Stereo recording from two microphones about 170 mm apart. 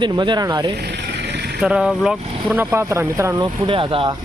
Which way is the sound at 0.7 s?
75° right (ahead or behind).